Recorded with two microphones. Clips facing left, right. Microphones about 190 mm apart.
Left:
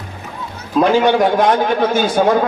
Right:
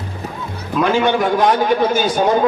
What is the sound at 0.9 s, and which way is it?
Speech, 40° left (ahead or behind).